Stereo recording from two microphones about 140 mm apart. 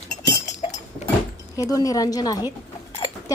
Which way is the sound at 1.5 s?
25° left (ahead or behind).